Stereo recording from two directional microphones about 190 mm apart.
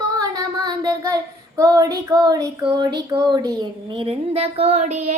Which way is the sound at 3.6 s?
30° right (ahead or behind).